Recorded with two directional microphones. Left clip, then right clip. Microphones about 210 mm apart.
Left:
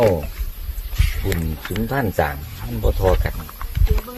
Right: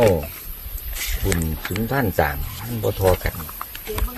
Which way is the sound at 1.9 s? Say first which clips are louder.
Even; 5° left (ahead or behind).